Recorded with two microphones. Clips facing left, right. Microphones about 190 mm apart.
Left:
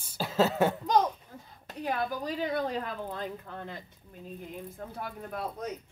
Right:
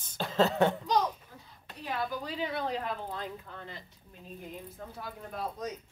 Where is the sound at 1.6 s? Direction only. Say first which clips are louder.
Left 3 dB; 45° left (ahead or behind).